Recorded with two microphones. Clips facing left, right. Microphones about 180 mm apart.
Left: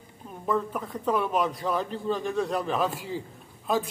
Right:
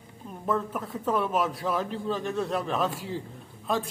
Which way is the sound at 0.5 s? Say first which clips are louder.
Left 1 dB; centre (ahead or behind).